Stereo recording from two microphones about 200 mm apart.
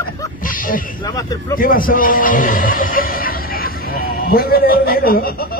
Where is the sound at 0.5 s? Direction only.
45° left (ahead or behind).